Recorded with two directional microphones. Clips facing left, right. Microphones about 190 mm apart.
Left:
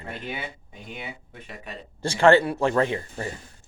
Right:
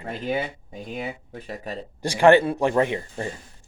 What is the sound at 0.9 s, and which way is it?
Speech, 40° right (ahead or behind).